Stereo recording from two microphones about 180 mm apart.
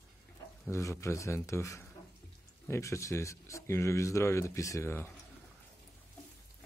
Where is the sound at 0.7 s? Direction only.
15° left (ahead or behind).